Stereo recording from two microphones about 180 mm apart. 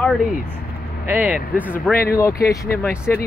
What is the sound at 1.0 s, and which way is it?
Speech, 10° right (ahead or behind).